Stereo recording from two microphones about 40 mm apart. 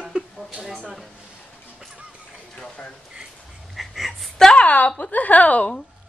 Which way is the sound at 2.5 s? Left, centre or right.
Centre.